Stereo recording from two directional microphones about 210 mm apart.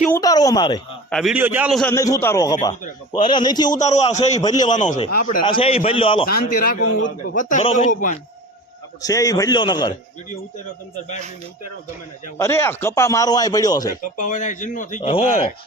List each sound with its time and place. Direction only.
0.1 s a man's voice: 15° left (ahead or behind)
1.1 s a man's voice: 5° right (ahead or behind)
1.9 s a man's voice: 15° left (ahead or behind)
3.7 s a man's voice: 35° left (ahead or behind)
4.4 s a man's voice: 20° left (ahead or behind)
4.9 s a man's voice: 40° left (ahead or behind)
5.4 s a man's voice: 25° left (ahead or behind)
6.4 s a man's voice: 40° left (ahead or behind)
9.0 s a man's voice: 15° left (ahead or behind)
12.4 s a man's voice: 10° left (ahead or behind)
14.2 s a man's voice: 35° left (ahead or behind)